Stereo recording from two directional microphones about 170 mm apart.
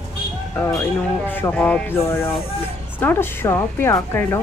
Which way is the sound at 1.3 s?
10° left (ahead or behind).